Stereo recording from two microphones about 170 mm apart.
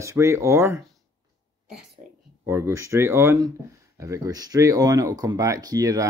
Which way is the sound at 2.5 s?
15° right (ahead or behind).